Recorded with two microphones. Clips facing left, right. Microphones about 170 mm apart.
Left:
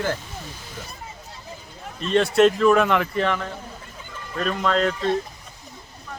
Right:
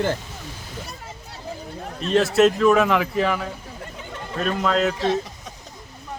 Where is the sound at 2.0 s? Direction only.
Centre (ahead or behind).